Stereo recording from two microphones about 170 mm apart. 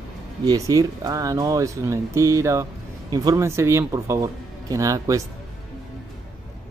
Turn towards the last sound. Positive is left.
turn(degrees=-20)  # may be behind; listen again after turning